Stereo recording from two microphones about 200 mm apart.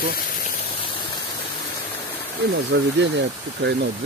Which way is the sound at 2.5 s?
60° right (ahead or behind).